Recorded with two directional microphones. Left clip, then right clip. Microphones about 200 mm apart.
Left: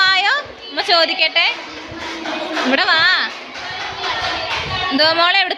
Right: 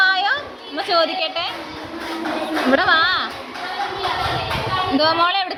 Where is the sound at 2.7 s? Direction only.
25° left (ahead or behind).